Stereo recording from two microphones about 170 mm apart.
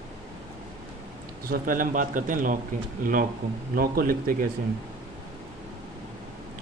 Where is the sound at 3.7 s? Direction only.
60° right (ahead or behind).